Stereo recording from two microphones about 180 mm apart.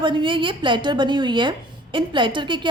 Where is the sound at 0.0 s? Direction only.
25° right (ahead or behind).